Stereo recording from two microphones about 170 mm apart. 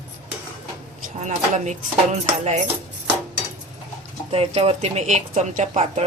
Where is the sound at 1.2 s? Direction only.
45° right (ahead or behind).